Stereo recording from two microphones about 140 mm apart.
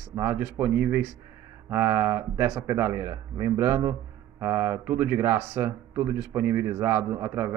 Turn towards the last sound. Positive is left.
turn(degrees=-15)  # may be behind; listen again after turning